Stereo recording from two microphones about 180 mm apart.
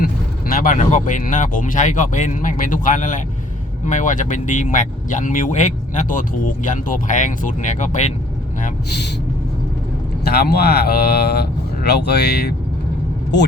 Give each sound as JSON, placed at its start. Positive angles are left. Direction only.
{"t": 0.0, "sound": "vehicle", "side_deg": 55}
{"t": 0.8, "sound": "speech", "side_deg": 45}
{"t": 10.2, "sound": "speech", "side_deg": 60}